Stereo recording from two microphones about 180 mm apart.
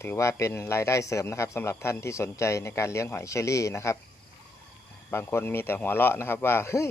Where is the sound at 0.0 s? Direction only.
15° left (ahead or behind).